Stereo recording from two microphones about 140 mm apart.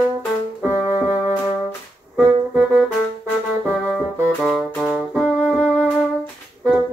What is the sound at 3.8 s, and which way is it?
Brass instrument, 5° left (ahead or behind).